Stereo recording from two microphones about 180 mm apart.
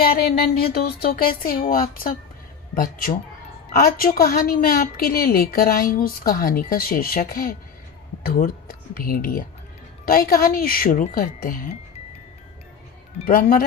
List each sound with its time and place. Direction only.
0.0 s a woman's voice: 60° left (ahead or behind)
13.2 s speech: 55° left (ahead or behind)